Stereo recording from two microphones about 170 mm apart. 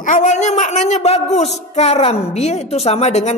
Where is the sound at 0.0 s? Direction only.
50° left (ahead or behind).